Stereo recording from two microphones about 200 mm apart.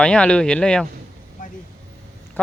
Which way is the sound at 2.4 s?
10° left (ahead or behind).